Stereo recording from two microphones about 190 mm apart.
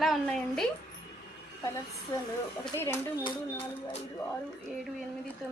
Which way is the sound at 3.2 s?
30° left (ahead or behind).